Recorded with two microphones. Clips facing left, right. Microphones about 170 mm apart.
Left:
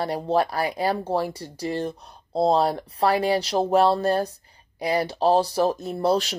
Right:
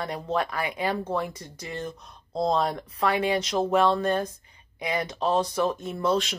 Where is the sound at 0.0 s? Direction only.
35° left (ahead or behind).